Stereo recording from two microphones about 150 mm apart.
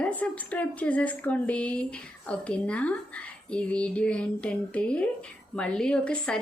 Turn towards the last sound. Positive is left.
turn(degrees=5)  # may be behind; listen again after turning